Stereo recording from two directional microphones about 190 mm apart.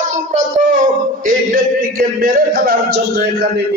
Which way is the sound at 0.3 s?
40° right (ahead or behind).